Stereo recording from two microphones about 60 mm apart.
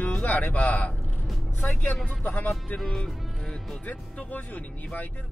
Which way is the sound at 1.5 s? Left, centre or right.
Left.